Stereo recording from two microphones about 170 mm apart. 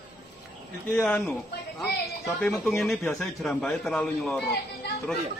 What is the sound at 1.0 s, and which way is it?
Speech, 5° left (ahead or behind).